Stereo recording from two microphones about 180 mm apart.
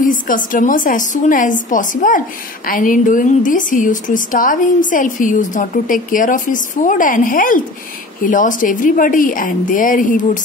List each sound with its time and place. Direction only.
0.0 s a woman's voice: 45° left (ahead or behind)